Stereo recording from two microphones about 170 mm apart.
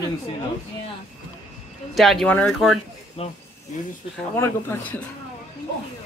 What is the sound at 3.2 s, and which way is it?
Speech, 35° left (ahead or behind).